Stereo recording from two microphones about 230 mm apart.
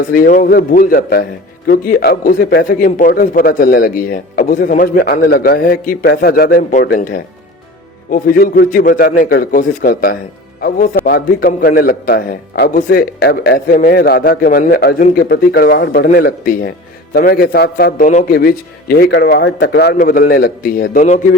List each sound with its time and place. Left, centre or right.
0.1 s a man's voice: left